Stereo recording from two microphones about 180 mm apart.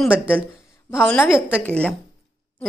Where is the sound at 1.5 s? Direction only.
10° left (ahead or behind).